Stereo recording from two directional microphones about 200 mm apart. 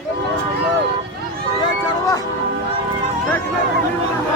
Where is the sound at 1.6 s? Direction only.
15° left (ahead or behind).